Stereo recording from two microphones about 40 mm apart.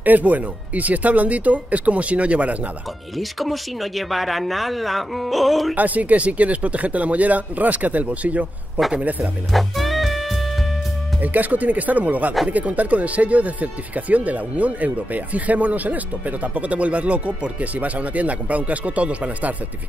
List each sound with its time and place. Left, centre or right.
0.0 s speech: right
3.2 s speech: centre
5.8 s speech: right
9.5 s music: centre
11.1 s speech: right